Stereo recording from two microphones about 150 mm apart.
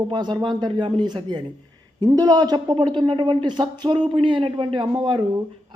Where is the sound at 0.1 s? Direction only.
30° right (ahead or behind).